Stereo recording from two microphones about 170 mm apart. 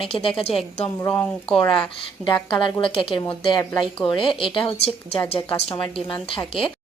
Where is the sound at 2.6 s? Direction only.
30° left (ahead or behind).